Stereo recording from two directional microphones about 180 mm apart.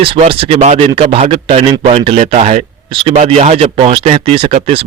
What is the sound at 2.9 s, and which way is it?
Speech, 30° right (ahead or behind).